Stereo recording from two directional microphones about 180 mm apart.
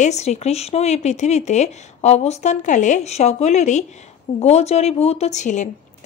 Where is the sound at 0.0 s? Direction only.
40° left (ahead or behind).